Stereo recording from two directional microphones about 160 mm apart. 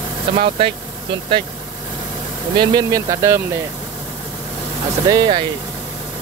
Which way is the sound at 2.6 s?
25° right (ahead or behind).